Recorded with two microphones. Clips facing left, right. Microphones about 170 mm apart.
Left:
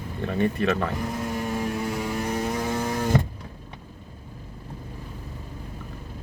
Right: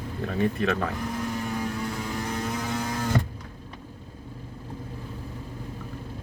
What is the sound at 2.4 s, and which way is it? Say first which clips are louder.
Vehicle: left 3 dB; 25° left (ahead or behind).